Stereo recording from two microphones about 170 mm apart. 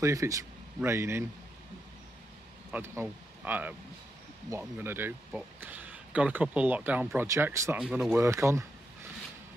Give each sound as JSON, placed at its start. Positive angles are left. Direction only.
{"t": 0.0, "sound": "speech", "side_deg": -20}
{"t": 2.7, "sound": "speech", "side_deg": -15}
{"t": 7.8, "sound": "speech", "side_deg": -5}
{"t": 8.1, "sound": "speech", "side_deg": -15}